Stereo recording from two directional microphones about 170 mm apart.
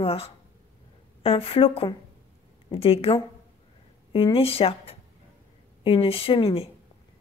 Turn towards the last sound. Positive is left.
turn(degrees=35)  # may be behind; listen again after turning